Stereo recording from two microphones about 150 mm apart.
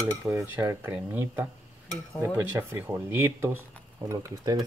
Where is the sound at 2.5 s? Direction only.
15° right (ahead or behind).